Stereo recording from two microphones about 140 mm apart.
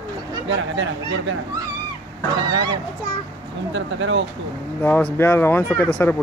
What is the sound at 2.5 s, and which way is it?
Speech, 30° right (ahead or behind).